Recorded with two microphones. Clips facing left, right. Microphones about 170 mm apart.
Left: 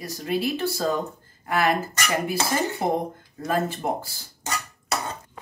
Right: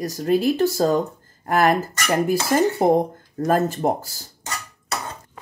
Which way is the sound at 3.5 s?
40° right (ahead or behind).